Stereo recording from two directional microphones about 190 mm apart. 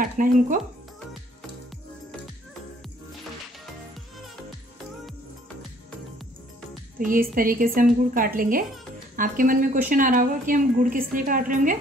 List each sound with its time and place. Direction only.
0.0 s a woman's voice: 45° right (ahead or behind)
7.1 s a woman's voice: 45° right (ahead or behind)